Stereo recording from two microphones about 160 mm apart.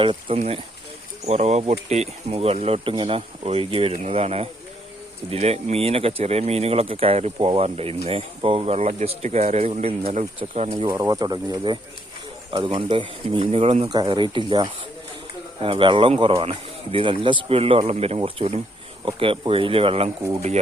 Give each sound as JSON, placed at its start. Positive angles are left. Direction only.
{"t": 0.0, "sound": "speech", "side_deg": -35}
{"t": 10.7, "sound": "speech", "side_deg": -30}
{"t": 13.8, "sound": "speech", "side_deg": -25}